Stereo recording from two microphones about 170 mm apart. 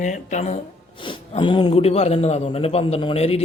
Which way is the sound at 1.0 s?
30° left (ahead or behind).